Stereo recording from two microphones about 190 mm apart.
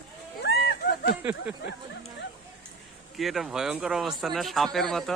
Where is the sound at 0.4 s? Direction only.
60° left (ahead or behind).